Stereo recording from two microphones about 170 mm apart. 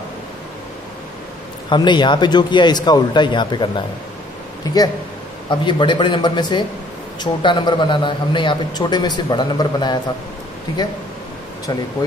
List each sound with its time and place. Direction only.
1.7 s a man's voice: 25° left (ahead or behind)